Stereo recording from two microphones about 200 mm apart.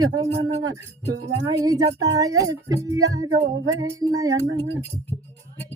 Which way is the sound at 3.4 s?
50° right (ahead or behind).